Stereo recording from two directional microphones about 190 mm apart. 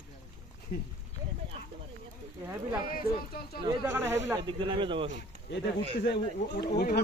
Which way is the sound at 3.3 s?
55° left (ahead or behind).